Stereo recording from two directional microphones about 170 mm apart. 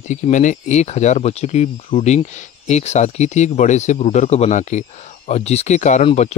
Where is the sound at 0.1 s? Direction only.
45° left (ahead or behind).